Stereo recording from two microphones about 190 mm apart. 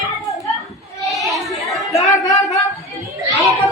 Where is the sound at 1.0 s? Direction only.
Centre (ahead or behind).